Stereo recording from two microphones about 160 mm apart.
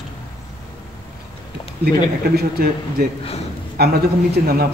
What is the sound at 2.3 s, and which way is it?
Speech, 75° right (ahead or behind).